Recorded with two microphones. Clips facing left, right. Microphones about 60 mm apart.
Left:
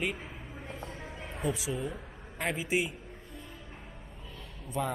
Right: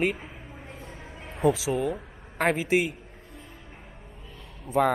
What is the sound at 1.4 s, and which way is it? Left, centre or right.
Speech, right.